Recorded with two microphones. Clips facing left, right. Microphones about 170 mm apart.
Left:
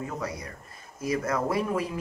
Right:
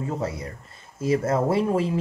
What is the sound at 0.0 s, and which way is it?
Speech, 25° right (ahead or behind).